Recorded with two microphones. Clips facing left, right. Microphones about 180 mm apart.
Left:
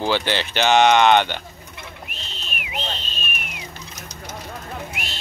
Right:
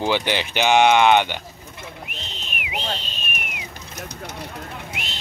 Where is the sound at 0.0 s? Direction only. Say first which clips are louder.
Even; 15° right (ahead or behind).